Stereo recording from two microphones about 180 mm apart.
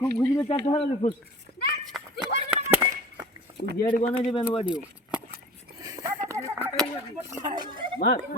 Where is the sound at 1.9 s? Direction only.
Centre (ahead or behind).